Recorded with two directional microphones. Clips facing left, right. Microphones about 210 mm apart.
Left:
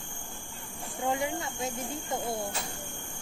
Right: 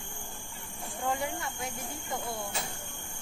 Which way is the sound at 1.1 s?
20° left (ahead or behind).